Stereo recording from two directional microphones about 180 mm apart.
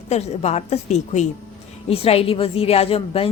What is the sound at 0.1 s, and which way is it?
A woman's voice, 35° left (ahead or behind).